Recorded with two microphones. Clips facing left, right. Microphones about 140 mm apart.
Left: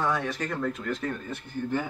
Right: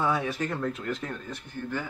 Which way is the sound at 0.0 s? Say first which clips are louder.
Right 1 dB; 5° right (ahead or behind).